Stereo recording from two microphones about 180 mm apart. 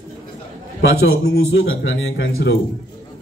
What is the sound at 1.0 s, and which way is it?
A man's voice, 90° left.